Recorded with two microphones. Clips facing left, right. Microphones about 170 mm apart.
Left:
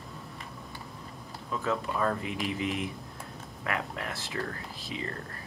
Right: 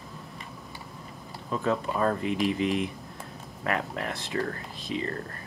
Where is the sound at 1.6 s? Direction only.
35° right (ahead or behind).